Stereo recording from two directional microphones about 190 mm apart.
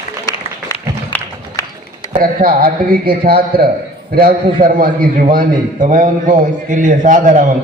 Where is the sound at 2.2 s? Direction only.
50° right (ahead or behind).